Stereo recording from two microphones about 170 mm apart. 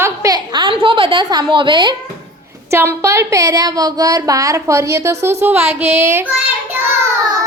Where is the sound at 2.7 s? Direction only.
15° right (ahead or behind).